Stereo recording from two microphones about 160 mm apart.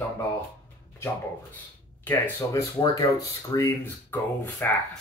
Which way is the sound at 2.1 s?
15° left (ahead or behind).